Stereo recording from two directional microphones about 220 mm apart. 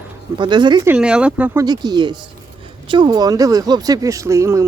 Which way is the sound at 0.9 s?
5° right (ahead or behind).